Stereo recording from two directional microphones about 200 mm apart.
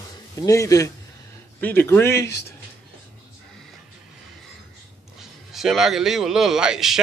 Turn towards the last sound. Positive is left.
turn(degrees=0)  # may be behind; listen again after turning